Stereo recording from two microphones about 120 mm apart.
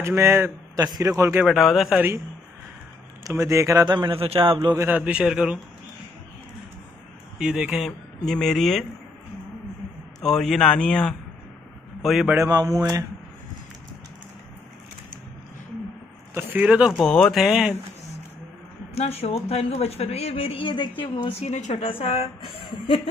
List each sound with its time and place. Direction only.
0.0 s a man's voice: 20° right (ahead or behind)
0.7 s a man's voice: 30° right (ahead or behind)
1.4 s speech: centre (ahead or behind)
2.0 s a man's voice: 20° right (ahead or behind)
3.3 s a man's voice: 25° right (ahead or behind)
3.8 s a man's voice: 40° right (ahead or behind)
4.7 s a man's voice: 15° right (ahead or behind)
7.3 s speech: 5° right (ahead or behind)
10.2 s speech: 5° left (ahead or behind)
12.4 s speech: 30° right (ahead or behind)
16.3 s speech: 15° right (ahead or behind)
18.9 s speech: 60° left (ahead or behind)
22.0 s speech: 60° left (ahead or behind)